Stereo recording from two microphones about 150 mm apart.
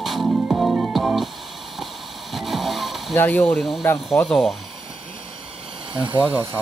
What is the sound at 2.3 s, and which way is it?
Vehicle, centre (ahead or behind).